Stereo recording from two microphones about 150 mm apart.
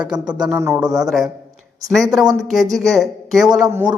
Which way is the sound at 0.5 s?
15° right (ahead or behind).